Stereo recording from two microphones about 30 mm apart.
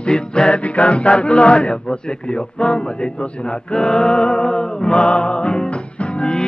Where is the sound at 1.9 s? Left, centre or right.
Left.